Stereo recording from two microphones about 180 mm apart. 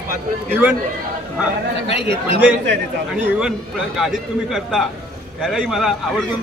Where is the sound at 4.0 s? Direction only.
Centre (ahead or behind).